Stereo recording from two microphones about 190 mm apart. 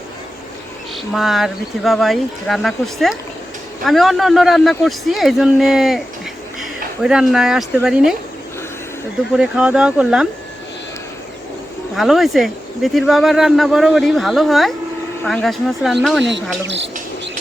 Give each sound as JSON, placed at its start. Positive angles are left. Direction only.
{"t": 1.1, "sound": "speech", "side_deg": 0}
{"t": 9.3, "sound": "speech", "side_deg": -5}
{"t": 11.9, "sound": "speech", "side_deg": 0}
{"t": 16.6, "sound": "speech", "side_deg": -70}